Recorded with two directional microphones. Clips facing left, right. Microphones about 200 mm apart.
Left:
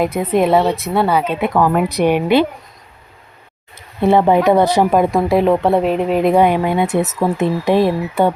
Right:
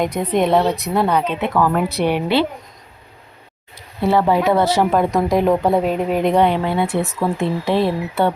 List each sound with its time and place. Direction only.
0.0 s speech: 5° left (ahead or behind)
3.8 s speech: 20° left (ahead or behind)